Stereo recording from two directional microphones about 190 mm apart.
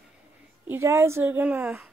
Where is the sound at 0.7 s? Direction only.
15° right (ahead or behind).